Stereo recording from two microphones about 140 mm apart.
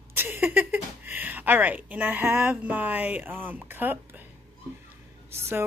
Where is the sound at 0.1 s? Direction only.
15° right (ahead or behind).